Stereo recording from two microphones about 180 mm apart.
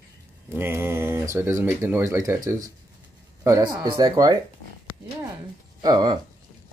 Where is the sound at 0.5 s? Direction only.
15° right (ahead or behind).